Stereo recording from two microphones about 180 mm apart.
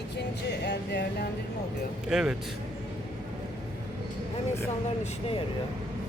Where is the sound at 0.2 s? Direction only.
70° left (ahead or behind).